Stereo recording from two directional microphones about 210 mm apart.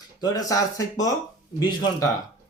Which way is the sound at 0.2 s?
15° left (ahead or behind).